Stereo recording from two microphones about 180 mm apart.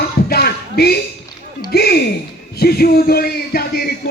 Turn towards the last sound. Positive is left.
turn(degrees=60)  # may be behind; listen again after turning